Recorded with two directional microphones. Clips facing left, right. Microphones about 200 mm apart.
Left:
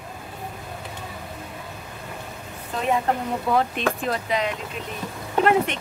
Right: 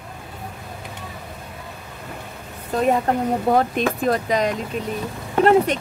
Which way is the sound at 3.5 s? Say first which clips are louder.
Right 2 dB; 45° right (ahead or behind).